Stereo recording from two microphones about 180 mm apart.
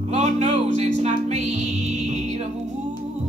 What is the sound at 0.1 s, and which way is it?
Music, 40° right (ahead or behind).